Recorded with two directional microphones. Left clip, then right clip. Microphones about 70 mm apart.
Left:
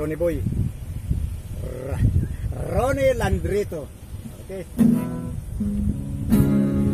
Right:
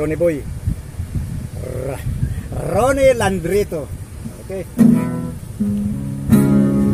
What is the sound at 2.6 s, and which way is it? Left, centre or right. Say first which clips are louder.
Speech: right 7 dB; centre.